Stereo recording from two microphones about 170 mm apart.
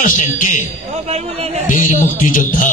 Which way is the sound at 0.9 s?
45° right (ahead or behind).